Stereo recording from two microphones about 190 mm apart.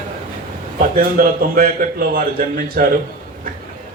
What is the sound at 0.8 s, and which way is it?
A man's voice, 50° right (ahead or behind).